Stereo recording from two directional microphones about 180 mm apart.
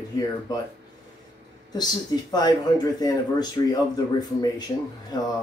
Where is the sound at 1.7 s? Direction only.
20° left (ahead or behind).